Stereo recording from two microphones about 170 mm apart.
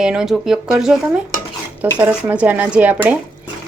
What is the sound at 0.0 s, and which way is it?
Speech, 5° right (ahead or behind).